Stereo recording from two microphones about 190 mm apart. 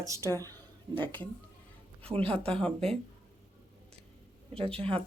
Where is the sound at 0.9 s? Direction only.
10° left (ahead or behind).